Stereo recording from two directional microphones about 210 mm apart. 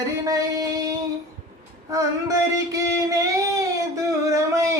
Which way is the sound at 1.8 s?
15° right (ahead or behind).